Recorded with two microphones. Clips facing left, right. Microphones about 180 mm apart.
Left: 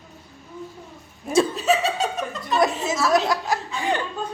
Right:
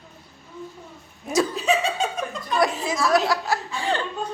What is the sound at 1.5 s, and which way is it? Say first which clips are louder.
Laughter: left 1 dB; centre (ahead or behind).